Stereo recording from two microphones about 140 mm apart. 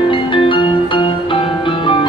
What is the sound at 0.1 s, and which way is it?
Music, 35° left (ahead or behind).